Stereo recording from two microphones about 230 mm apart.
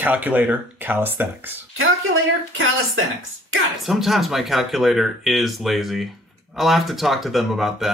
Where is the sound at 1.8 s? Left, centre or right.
Right.